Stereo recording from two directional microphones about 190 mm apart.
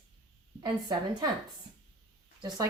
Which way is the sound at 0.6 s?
20° right (ahead or behind).